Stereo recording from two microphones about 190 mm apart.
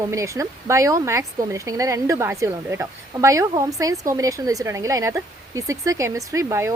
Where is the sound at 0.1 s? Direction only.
15° right (ahead or behind).